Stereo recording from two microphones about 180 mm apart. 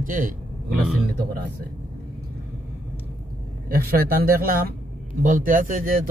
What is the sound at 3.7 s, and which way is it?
A man's voice, 55° right (ahead or behind).